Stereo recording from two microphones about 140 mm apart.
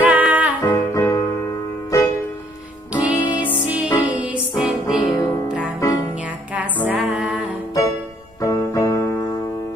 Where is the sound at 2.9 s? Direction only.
10° right (ahead or behind).